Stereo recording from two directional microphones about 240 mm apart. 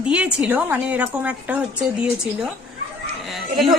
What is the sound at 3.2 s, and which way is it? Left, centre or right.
Speech, centre.